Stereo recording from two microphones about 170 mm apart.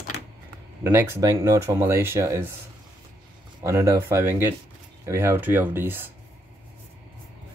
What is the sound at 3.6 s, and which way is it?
Speech, 15° right (ahead or behind).